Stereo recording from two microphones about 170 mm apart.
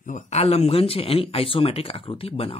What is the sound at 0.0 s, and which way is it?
Speech, 45° left (ahead or behind).